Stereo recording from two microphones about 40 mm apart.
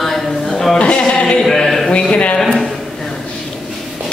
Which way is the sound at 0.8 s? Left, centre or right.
Left.